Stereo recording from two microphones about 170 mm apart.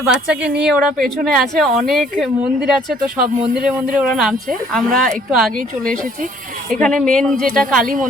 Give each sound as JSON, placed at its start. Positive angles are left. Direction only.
{"t": 0.1, "sound": "speech", "side_deg": -5}
{"t": 6.8, "sound": "speech", "side_deg": 5}